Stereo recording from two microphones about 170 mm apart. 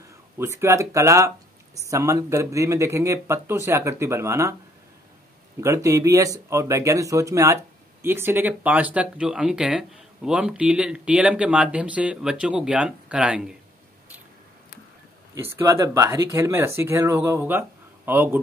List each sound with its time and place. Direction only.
0.4 s speech: 15° right (ahead or behind)
5.6 s speech: 20° right (ahead or behind)
15.3 s speech: 15° right (ahead or behind)